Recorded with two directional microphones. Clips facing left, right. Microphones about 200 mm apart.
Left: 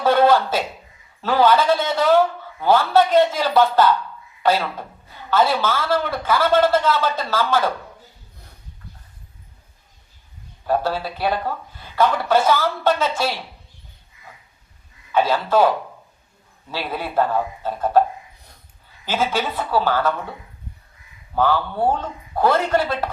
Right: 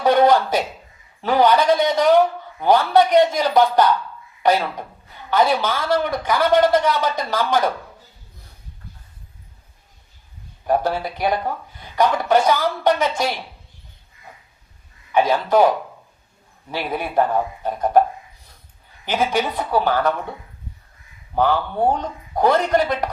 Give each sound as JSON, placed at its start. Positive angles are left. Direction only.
{"t": 0.0, "sound": "a man's voice", "side_deg": -15}
{"t": 10.7, "sound": "a man's voice", "side_deg": -15}
{"t": 15.1, "sound": "a man's voice", "side_deg": -15}
{"t": 19.0, "sound": "a man's voice", "side_deg": -15}
{"t": 21.3, "sound": "a man's voice", "side_deg": -15}